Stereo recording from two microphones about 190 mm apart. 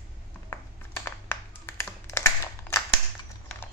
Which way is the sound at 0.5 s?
10° left (ahead or behind).